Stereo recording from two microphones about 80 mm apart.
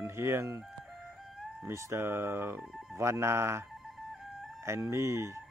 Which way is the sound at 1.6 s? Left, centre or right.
Right.